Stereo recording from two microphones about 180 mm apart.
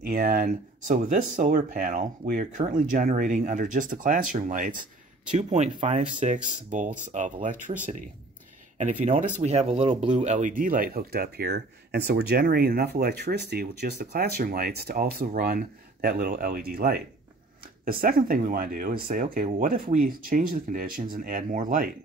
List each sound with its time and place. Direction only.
0.0 s speech: 55° right (ahead or behind)